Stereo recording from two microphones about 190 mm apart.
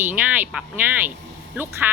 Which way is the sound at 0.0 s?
10° right (ahead or behind).